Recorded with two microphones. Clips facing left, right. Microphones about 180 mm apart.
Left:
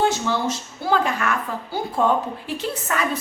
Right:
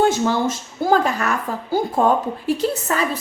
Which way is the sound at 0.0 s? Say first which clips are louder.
Right 4 dB; 45° right (ahead or behind).